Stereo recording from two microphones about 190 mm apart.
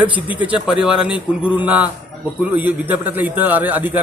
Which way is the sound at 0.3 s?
5° right (ahead or behind).